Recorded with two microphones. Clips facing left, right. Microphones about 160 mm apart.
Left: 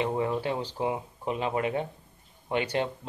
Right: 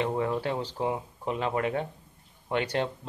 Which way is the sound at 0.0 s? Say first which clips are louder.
Even; 10° left (ahead or behind).